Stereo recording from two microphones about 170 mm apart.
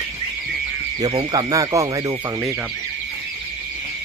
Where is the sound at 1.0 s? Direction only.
25° right (ahead or behind).